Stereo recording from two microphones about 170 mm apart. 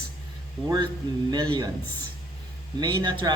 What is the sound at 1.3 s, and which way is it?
Speech, 25° right (ahead or behind).